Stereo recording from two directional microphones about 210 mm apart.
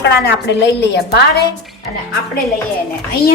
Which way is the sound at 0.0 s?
55° left (ahead or behind).